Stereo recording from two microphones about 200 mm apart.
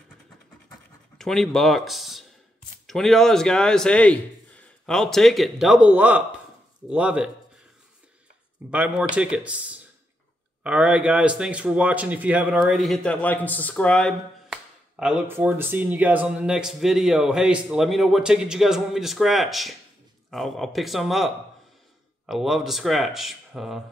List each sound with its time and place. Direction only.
1.1 s a man's voice: centre (ahead or behind)
8.6 s a man's voice: 5° right (ahead or behind)